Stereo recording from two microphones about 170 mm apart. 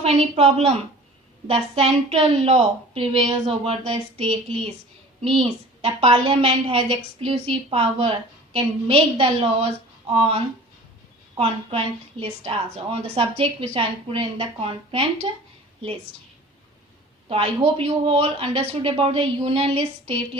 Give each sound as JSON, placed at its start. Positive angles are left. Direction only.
{"t": 0.0, "sound": "speech", "side_deg": -35}
{"t": 11.3, "sound": "speech", "side_deg": -35}
{"t": 17.2, "sound": "speech", "side_deg": -35}